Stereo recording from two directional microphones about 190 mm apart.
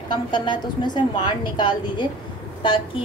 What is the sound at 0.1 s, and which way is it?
A woman's voice, 25° left (ahead or behind).